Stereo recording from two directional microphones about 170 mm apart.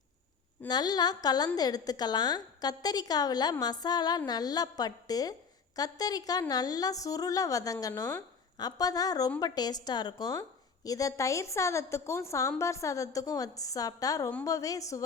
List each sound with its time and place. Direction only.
0.7 s a woman's voice: 25° left (ahead or behind)